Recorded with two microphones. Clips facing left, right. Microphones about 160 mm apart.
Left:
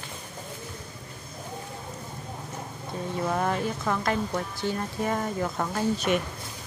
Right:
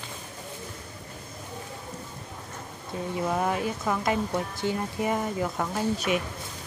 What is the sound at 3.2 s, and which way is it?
Speech, 5° right (ahead or behind).